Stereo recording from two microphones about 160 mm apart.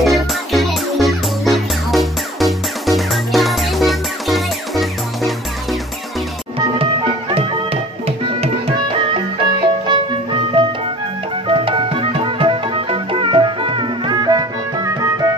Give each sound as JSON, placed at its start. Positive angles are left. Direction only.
{"t": 0.0, "sound": "music", "side_deg": 0}
{"t": 9.8, "sound": "music", "side_deg": -30}